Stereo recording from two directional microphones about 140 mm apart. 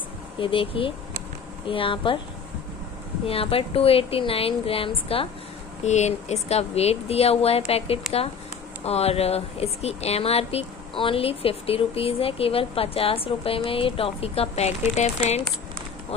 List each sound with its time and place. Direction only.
0.4 s speech: 40° left (ahead or behind)
3.3 s speech: 45° left (ahead or behind)
5.9 s speech: 55° left (ahead or behind)